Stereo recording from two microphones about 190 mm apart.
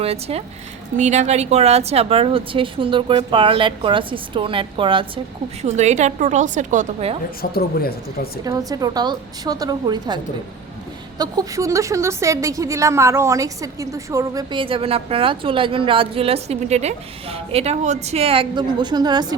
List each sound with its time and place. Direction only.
0.0 s a woman's voice: 30° right (ahead or behind)
5.6 s a woman's voice: 35° right (ahead or behind)
7.5 s speech: 55° left (ahead or behind)
8.4 s a woman's voice: 20° right (ahead or behind)
11.2 s a woman's voice: 20° right (ahead or behind)